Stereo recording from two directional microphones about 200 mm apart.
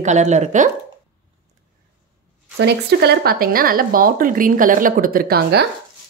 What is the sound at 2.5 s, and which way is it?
Speech, 55° right (ahead or behind).